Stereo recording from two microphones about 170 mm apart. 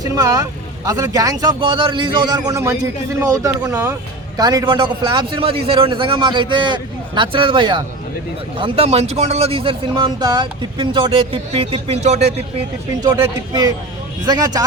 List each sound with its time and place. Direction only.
0.0 s a man's voice: 20° right (ahead or behind)
4.4 s a man's voice: 25° right (ahead or behind); by 12.3 s 40° right (ahead or behind)
13.0 s a man's voice: 25° right (ahead or behind)